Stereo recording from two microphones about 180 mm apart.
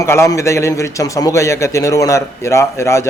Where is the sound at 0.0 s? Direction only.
15° left (ahead or behind).